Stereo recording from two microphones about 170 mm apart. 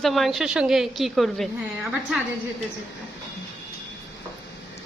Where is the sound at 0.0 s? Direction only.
Centre (ahead or behind).